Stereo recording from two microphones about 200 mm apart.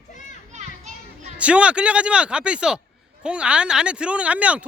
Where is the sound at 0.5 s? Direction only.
35° right (ahead or behind).